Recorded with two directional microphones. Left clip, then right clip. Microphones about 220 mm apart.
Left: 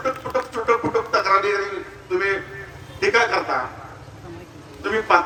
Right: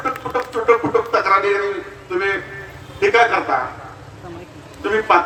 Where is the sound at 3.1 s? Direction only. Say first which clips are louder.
Right 4 dB; 40° left (ahead or behind).